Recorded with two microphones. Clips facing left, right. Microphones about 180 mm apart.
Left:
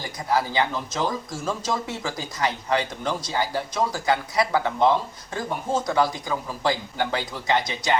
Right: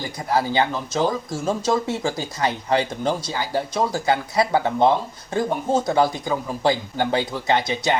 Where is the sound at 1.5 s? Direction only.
30° right (ahead or behind).